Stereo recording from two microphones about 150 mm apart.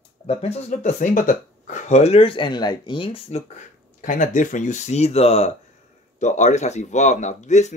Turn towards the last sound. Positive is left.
turn(degrees=50)  # may be behind; listen again after turning